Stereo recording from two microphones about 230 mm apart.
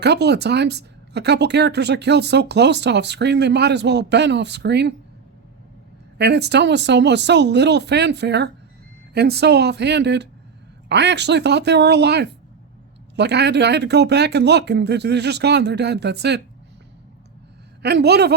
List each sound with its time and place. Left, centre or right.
0.0 s speech: right
6.1 s speech: right
17.8 s speech: right